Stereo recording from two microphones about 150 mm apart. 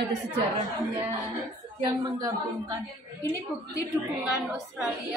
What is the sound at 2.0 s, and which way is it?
Speech, 30° right (ahead or behind).